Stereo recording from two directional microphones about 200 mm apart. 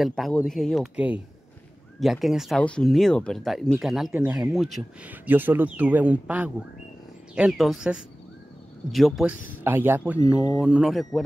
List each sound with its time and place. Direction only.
0.0 s speech: centre (ahead or behind)